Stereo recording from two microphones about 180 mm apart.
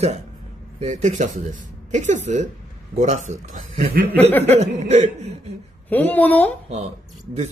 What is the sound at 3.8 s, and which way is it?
Chuckle, 60° right (ahead or behind).